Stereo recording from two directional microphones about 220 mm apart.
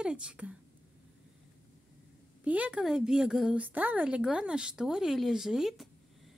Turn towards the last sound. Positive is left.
turn(degrees=0)  # may be behind; listen again after turning